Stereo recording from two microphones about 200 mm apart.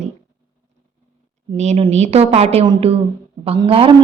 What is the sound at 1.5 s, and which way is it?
A woman's voice, 30° right (ahead or behind).